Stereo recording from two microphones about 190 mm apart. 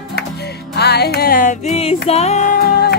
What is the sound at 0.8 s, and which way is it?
Music, 60° left (ahead or behind).